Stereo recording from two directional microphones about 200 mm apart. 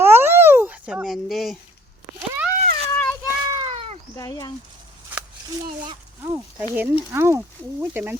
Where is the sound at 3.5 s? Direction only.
25° right (ahead or behind).